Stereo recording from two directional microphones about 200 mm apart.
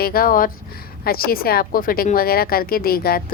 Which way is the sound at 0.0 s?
50° left (ahead or behind).